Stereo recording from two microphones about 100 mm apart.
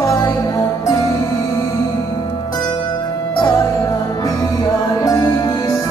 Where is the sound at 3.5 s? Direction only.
30° left (ahead or behind).